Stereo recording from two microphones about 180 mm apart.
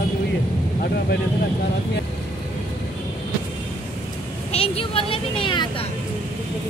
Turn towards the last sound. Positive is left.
turn(degrees=25)  # may be behind; listen again after turning